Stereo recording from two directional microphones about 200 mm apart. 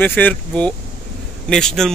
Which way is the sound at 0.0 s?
10° left (ahead or behind).